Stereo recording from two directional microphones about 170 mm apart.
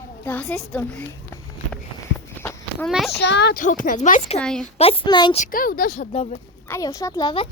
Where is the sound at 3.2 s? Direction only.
85° left.